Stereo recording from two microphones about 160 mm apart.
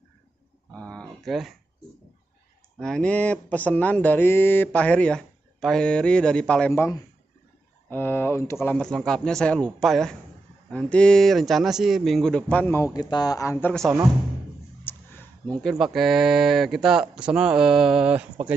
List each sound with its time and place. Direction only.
0.7 s speech: 5° left (ahead or behind)
2.8 s speech: 5° left (ahead or behind)